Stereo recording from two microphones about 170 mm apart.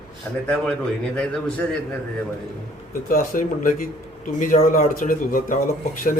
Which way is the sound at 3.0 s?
55° left (ahead or behind).